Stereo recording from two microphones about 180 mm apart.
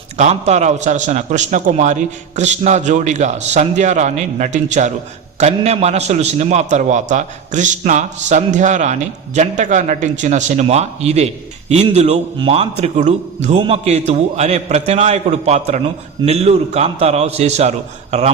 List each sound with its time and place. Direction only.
0.2 s a man's voice: 40° right (ahead or behind)